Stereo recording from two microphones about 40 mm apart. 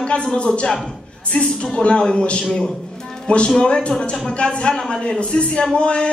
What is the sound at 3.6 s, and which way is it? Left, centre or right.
Speech, left.